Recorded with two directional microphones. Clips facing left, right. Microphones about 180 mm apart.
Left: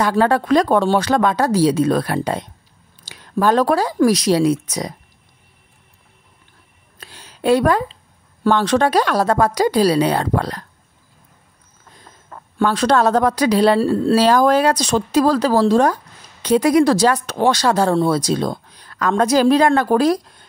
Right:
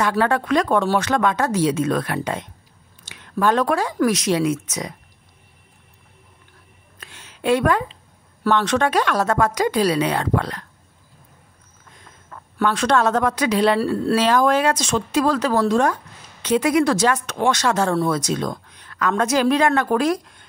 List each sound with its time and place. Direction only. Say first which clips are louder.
0.1 s speech: left 4 dB; 35° left (ahead or behind)
7.0 s a sound: left 4 dB; 35° left (ahead or behind)
8.5 s speech: left 3 dB; 35° left (ahead or behind)
11.9 s speech: left 2 dB; 35° left (ahead or behind)